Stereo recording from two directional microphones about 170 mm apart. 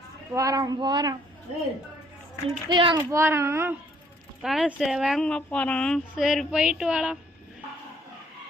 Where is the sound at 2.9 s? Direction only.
15° right (ahead or behind).